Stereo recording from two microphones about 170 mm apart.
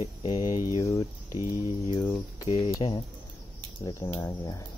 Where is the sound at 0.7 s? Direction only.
20° left (ahead or behind).